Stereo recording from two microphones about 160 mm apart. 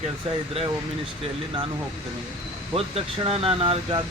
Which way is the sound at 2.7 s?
40° right (ahead or behind).